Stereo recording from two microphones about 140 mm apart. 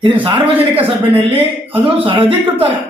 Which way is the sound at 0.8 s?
40° right (ahead or behind).